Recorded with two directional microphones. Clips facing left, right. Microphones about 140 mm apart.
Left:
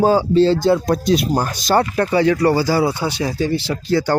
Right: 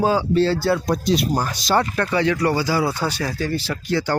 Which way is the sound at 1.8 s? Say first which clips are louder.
Left 5 dB; 30° left (ahead or behind).